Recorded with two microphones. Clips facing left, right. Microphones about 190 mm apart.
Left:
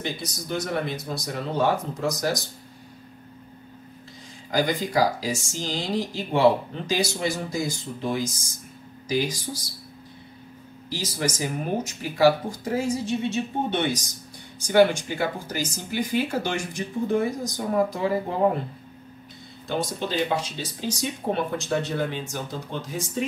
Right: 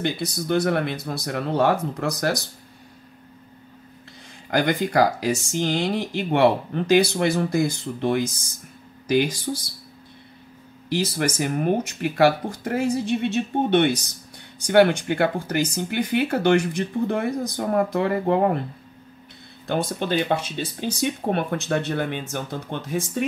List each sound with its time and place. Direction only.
0.0 s speech: 60° right (ahead or behind)
4.5 s speech: 60° right (ahead or behind)
10.9 s speech: 60° right (ahead or behind)
19.7 s speech: 55° right (ahead or behind)